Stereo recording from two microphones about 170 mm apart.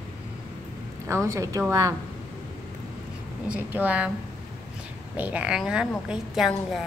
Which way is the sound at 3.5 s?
10° right (ahead or behind).